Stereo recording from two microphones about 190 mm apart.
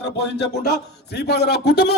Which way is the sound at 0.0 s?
60° left (ahead or behind).